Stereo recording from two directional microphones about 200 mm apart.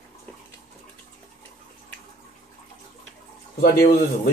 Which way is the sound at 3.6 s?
50° left (ahead or behind).